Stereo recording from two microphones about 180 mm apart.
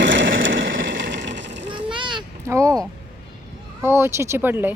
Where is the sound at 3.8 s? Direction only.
15° right (ahead or behind).